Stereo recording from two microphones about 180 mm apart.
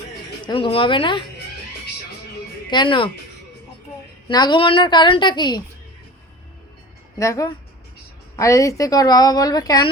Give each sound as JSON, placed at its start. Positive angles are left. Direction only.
{"t": 0.4, "sound": "a woman's voice", "side_deg": 30}
{"t": 2.6, "sound": "speech", "side_deg": 25}
{"t": 4.3, "sound": "a woman's voice", "side_deg": 25}
{"t": 7.2, "sound": "a woman's voice", "side_deg": 20}